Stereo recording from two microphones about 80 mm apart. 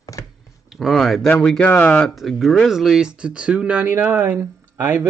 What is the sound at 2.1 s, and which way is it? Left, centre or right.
Speech, centre.